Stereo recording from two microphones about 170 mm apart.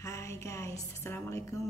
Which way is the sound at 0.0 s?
15° left (ahead or behind).